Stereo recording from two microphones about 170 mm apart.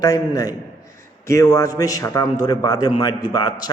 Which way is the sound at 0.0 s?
20° left (ahead or behind).